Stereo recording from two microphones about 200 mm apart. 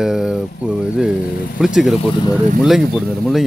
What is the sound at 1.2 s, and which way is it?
Speech, 45° left (ahead or behind).